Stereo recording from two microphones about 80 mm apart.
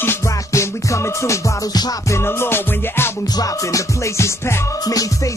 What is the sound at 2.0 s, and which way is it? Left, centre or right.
Music, left.